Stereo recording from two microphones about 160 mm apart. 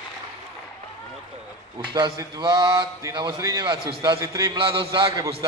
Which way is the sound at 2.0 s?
25° right (ahead or behind).